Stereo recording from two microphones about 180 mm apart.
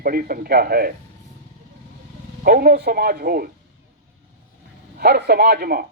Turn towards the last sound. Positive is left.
turn(degrees=-55)  # may be behind; listen again after turning